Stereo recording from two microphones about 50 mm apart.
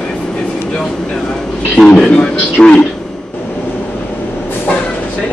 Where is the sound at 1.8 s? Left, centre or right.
Left.